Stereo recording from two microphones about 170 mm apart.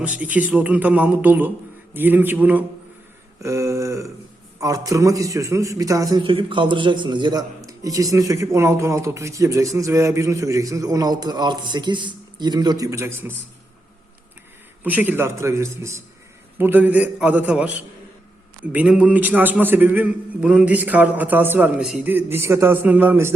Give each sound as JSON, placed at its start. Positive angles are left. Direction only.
{"t": 0.0, "sound": "a man's voice", "side_deg": -10}
{"t": 14.8, "sound": "a man's voice", "side_deg": -10}